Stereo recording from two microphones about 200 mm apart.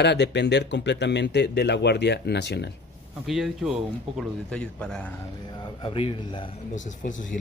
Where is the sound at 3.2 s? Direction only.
Centre (ahead or behind).